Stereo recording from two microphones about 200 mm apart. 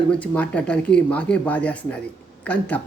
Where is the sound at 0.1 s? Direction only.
5° left (ahead or behind).